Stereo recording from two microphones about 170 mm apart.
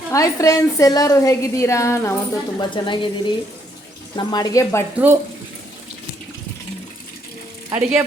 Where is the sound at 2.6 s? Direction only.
30° left (ahead or behind).